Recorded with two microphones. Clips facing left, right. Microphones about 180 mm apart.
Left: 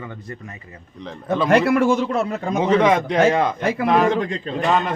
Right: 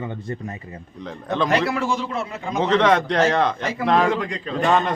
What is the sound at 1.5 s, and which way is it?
A man's voice, 55° left (ahead or behind).